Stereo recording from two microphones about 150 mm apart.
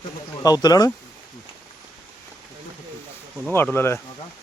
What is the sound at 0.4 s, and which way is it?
Speech, 25° left (ahead or behind).